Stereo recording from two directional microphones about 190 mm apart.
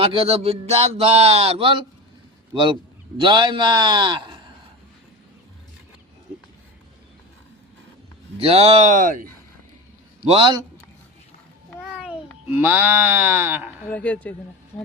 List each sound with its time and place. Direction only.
0.0 s a man's voice: 30° right (ahead or behind)
8.4 s speech: 30° right (ahead or behind)
10.2 s a man's voice: 30° right (ahead or behind)
11.8 s a sound: 5° right (ahead or behind)
12.5 s speech: 10° right (ahead or behind)
13.9 s speech: 5° left (ahead or behind)